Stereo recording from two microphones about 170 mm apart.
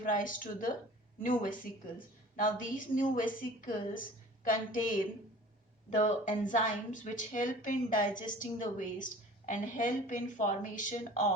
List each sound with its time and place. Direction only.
0.0 s a woman's voice: 50° left (ahead or behind)
4.4 s a woman's voice: 50° left (ahead or behind)